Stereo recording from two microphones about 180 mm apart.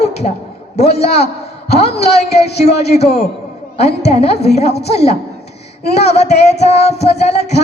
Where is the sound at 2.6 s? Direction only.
35° left (ahead or behind).